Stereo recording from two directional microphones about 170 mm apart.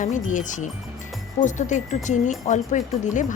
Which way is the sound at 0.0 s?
45° left (ahead or behind).